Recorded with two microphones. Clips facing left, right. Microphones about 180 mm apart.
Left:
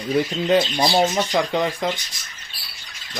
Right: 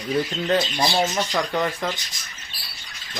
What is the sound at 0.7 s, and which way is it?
Speech, 20° left (ahead or behind).